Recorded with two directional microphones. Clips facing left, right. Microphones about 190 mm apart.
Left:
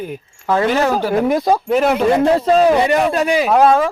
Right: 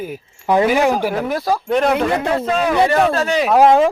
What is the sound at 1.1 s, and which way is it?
Speech, 15° left (ahead or behind).